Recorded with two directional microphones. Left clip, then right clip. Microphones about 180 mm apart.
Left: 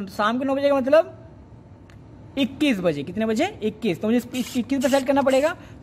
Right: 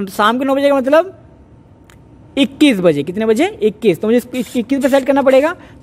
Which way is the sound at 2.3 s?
40° right (ahead or behind).